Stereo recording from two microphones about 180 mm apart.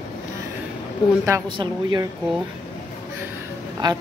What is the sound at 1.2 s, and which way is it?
Speech, 20° right (ahead or behind).